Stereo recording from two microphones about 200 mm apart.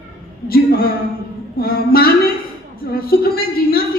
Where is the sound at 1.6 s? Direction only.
50° left (ahead or behind).